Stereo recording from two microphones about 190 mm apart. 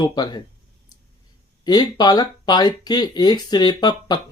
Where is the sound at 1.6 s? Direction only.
20° left (ahead or behind).